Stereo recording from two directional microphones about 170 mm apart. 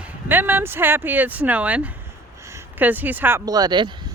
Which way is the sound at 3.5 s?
25° right (ahead or behind).